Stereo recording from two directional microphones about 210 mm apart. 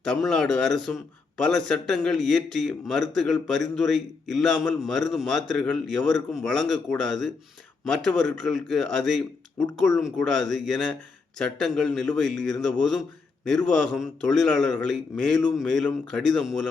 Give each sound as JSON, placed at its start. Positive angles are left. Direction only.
{"t": 0.0, "sound": "a man's voice", "side_deg": 5}